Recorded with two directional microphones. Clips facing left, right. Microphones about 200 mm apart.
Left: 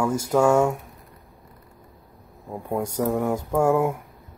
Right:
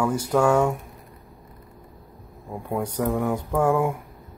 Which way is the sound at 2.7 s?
10° left (ahead or behind).